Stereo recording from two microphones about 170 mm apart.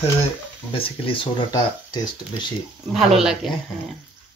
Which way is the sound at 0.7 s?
35° left (ahead or behind).